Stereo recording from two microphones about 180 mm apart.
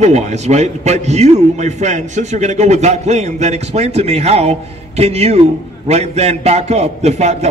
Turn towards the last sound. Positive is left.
turn(degrees=-40)  # may be behind; listen again after turning